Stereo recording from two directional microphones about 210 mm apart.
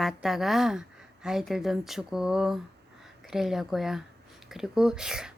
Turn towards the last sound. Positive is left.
turn(degrees=-5)  # may be behind; listen again after turning